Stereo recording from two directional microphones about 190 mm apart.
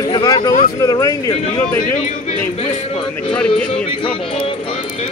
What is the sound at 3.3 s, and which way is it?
Speech, 5° left (ahead or behind).